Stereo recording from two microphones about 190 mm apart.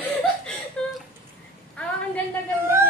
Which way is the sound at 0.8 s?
5° left (ahead or behind).